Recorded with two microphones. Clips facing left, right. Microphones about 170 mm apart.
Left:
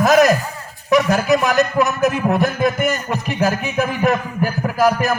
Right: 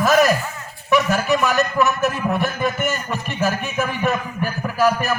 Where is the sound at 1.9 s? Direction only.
40° left (ahead or behind).